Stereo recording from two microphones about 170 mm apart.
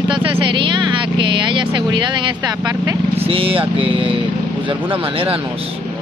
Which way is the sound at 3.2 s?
35° right (ahead or behind).